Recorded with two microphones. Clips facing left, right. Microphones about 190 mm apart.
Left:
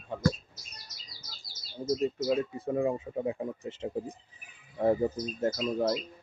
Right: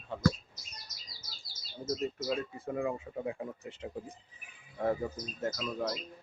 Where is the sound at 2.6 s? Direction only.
25° left (ahead or behind).